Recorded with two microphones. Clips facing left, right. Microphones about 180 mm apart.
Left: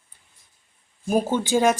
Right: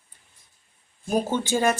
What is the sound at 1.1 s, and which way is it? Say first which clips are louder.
Speech: left 3 dB; 15° left (ahead or behind).